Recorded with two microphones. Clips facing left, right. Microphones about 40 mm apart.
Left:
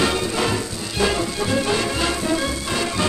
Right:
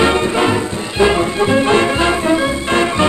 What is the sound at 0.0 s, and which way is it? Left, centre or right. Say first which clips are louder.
Music: right 7 dB; right.